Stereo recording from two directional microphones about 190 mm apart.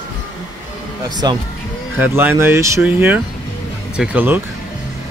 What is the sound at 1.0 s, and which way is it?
Speech, 20° right (ahead or behind).